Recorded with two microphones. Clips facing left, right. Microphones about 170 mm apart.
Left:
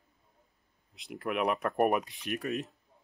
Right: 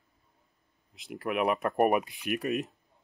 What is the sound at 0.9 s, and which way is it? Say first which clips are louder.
Speech: right 2 dB; centre (ahead or behind).